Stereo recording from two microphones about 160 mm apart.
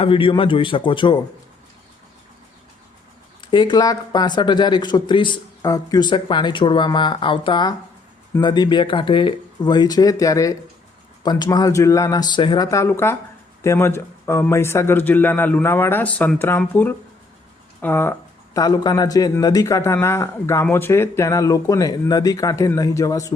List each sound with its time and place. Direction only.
0.0 s speech: 35° left (ahead or behind)
3.4 s a man's voice: 30° left (ahead or behind); by 18.1 s 10° left (ahead or behind)
18.5 s a man's voice: 25° left (ahead or behind)